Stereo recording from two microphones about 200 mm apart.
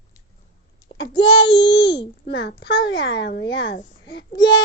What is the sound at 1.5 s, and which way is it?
A child's voice, 60° left (ahead or behind).